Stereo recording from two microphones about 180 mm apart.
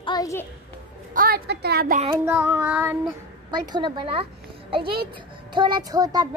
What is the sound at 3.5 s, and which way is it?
A woman's voice, 25° right (ahead or behind).